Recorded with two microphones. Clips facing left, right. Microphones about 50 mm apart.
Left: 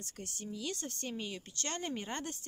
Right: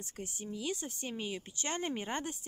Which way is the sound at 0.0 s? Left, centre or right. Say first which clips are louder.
Right 2 dB; centre.